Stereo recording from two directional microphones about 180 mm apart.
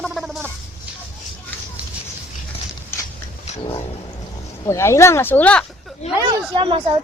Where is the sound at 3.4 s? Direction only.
30° left (ahead or behind).